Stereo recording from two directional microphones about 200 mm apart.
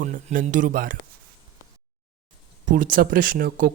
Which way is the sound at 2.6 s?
45° right (ahead or behind).